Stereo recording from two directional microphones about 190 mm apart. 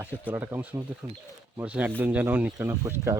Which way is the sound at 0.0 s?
10° right (ahead or behind).